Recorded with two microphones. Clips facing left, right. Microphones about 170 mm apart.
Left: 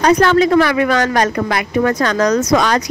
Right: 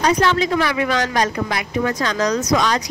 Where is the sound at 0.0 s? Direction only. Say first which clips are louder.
Left 6 dB; 55° left (ahead or behind).